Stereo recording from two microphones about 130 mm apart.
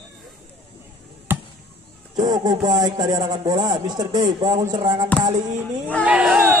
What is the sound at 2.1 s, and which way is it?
Speech, 30° right (ahead or behind).